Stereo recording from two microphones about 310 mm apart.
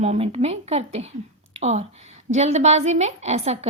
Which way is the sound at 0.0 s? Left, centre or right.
Centre.